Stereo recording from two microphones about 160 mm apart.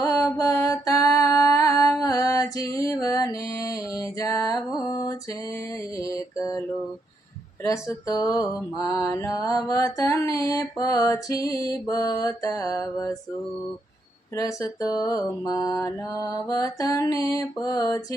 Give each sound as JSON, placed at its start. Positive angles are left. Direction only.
{"t": 0.0, "sound": "music", "side_deg": 20}
{"t": 7.6, "sound": "mantra", "side_deg": 20}
{"t": 14.3, "sound": "mantra", "side_deg": 20}